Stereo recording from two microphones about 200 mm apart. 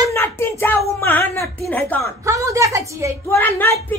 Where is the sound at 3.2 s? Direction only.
10° left (ahead or behind).